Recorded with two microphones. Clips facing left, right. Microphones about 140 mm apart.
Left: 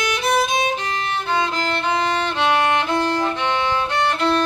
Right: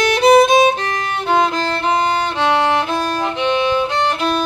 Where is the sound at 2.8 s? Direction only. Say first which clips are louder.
Right 1 dB; 10° right (ahead or behind).